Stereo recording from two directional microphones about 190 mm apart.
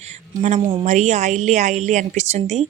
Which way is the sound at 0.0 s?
35° right (ahead or behind).